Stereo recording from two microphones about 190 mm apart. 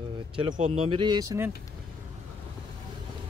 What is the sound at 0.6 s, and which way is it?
Speech, 30° right (ahead or behind).